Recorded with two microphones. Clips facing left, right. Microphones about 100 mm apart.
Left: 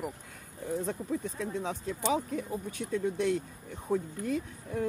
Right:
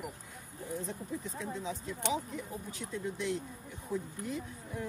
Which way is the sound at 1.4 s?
60° left (ahead or behind).